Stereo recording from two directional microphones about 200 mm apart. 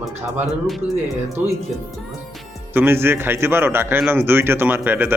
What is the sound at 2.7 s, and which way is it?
A man's voice, 10° right (ahead or behind).